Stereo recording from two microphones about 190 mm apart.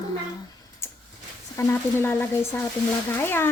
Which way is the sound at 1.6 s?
10° left (ahead or behind).